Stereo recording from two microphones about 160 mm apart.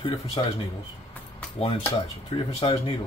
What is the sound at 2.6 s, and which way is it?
Speech, 35° left (ahead or behind).